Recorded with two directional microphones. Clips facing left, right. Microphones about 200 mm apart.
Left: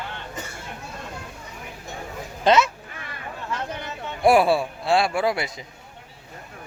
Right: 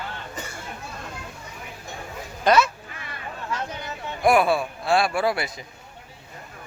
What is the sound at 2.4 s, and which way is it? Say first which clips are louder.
Speech: left 1 dB; 20° left (ahead or behind).